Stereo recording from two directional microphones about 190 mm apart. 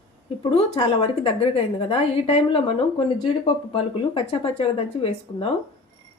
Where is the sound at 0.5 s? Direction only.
30° left (ahead or behind).